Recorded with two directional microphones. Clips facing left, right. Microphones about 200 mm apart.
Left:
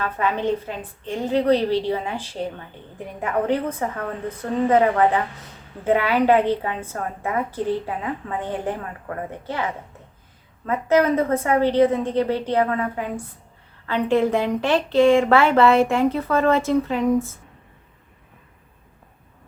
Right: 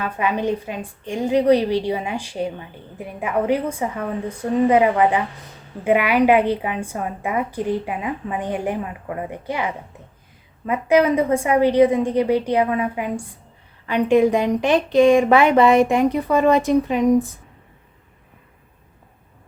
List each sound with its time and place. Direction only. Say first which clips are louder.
0.0 s a woman's voice: right 1 dB; 15° right (ahead or behind)